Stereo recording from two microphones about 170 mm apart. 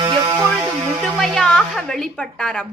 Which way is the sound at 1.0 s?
Centre (ahead or behind).